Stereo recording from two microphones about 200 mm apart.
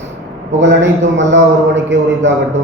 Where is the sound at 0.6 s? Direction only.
65° right (ahead or behind).